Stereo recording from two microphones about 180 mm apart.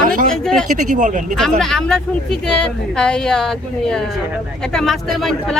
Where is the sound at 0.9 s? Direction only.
45° right (ahead or behind).